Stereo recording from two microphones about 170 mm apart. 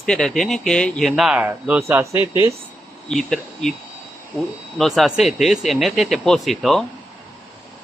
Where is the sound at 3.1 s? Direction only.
Centre (ahead or behind).